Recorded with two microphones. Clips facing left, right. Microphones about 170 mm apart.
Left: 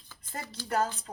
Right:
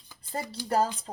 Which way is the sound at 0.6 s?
35° right (ahead or behind).